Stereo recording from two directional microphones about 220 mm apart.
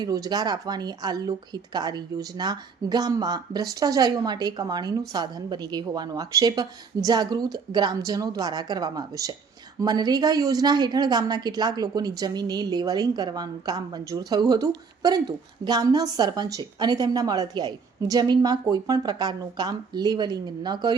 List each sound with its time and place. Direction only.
0.0 s a woman's voice: 15° right (ahead or behind)